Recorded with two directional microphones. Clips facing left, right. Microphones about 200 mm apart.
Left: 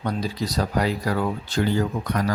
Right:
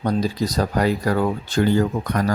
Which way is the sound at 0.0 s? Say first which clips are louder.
Right 5 dB; 40° right (ahead or behind).